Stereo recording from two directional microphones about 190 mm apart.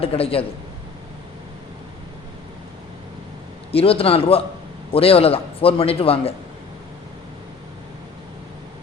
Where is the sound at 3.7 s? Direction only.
30° left (ahead or behind).